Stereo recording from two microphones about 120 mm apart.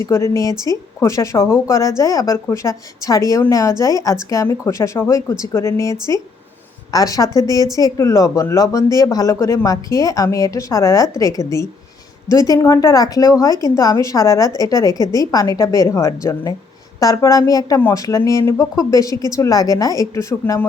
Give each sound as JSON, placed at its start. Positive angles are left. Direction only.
{"t": 0.0, "sound": "speech", "side_deg": 20}